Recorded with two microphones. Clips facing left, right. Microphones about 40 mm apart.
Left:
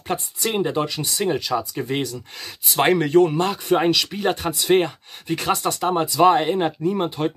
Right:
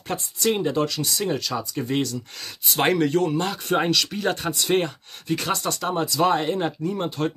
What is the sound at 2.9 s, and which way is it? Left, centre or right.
Speech, left.